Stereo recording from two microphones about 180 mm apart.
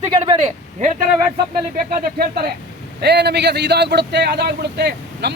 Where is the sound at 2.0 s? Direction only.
60° right (ahead or behind).